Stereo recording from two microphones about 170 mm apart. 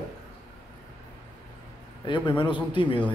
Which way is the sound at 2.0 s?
30° left (ahead or behind).